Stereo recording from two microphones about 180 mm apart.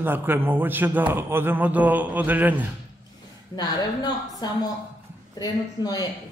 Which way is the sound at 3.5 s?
20° left (ahead or behind).